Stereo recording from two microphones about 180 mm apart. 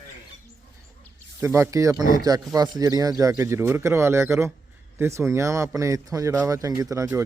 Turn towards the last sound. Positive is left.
turn(degrees=-15)  # may be behind; listen again after turning